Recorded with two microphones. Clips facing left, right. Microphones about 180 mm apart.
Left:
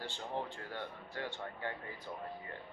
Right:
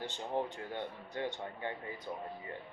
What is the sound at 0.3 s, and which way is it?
Speech, 15° right (ahead or behind).